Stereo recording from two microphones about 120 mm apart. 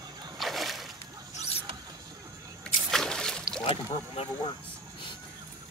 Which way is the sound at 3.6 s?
55° left (ahead or behind).